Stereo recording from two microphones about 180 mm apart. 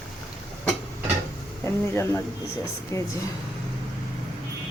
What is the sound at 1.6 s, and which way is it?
Speech, 15° left (ahead or behind).